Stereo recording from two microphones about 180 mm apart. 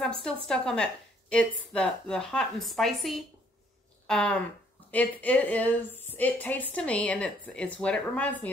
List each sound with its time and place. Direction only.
0.0 s a woman's voice: centre (ahead or behind)